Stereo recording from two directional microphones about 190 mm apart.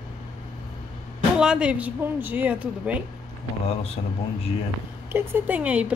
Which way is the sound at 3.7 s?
30° left (ahead or behind).